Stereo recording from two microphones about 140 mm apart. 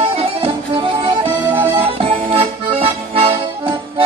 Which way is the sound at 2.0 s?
45° right (ahead or behind).